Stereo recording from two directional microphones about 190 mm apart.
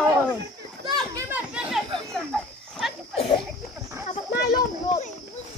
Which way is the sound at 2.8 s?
Centre (ahead or behind).